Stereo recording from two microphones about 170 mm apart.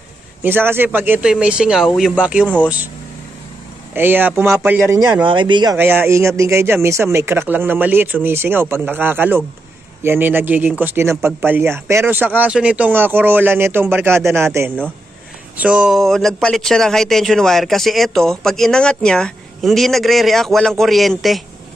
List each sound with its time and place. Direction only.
0.4 s speech: 10° right (ahead or behind)
2.4 s speech: 10° left (ahead or behind)
3.9 s speech: 10° right (ahead or behind)
5.8 s speech: 10° right (ahead or behind)